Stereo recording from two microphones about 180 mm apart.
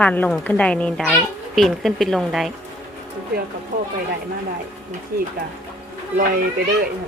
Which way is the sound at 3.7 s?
50° right (ahead or behind).